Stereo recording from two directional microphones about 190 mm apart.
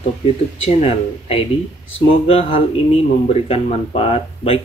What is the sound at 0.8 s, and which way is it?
Speech, 30° left (ahead or behind).